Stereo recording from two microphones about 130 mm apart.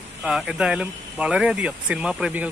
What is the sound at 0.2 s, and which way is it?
Speech, 5° right (ahead or behind).